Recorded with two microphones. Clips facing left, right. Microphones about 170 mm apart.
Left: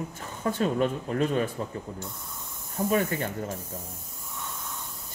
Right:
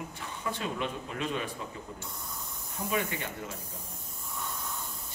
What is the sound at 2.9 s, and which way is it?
Speech, 45° left (ahead or behind).